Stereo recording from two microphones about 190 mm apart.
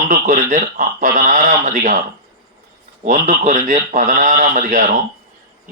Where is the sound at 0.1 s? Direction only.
45° right (ahead or behind).